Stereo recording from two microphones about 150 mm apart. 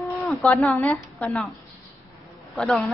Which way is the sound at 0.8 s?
5° left (ahead or behind).